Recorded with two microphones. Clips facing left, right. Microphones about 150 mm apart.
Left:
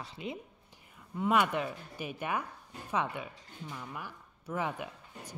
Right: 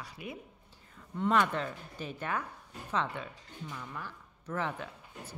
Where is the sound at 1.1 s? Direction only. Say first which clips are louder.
Even; 10° left (ahead or behind).